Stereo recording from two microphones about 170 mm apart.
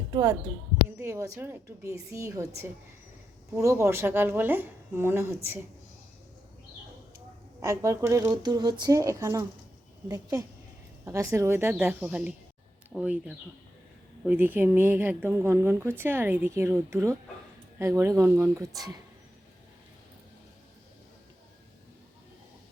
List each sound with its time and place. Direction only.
0.1 s speech: 20° right (ahead or behind)
3.5 s speech: 15° right (ahead or behind)
7.6 s speech: 20° right (ahead or behind)